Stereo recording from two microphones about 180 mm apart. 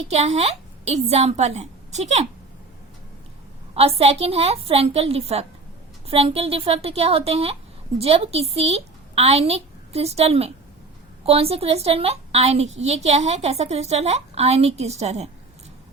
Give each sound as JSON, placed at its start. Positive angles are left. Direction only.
{"t": 0.1, "sound": "a woman's voice", "side_deg": -35}
{"t": 3.8, "sound": "a woman's voice", "side_deg": -35}